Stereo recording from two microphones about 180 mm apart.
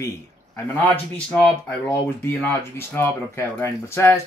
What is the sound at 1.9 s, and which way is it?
Speech, 15° left (ahead or behind).